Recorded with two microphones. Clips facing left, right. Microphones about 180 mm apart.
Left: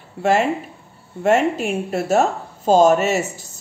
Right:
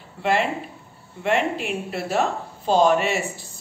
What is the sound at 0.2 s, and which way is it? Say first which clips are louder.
A woman's voice: left 5 dB; 45° left (ahead or behind).